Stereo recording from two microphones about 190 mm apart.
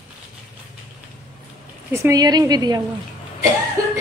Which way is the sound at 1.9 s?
15° right (ahead or behind).